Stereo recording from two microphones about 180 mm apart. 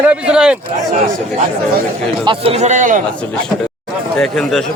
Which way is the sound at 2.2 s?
30° right (ahead or behind).